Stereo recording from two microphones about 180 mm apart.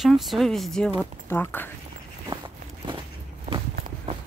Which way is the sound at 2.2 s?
25° right (ahead or behind).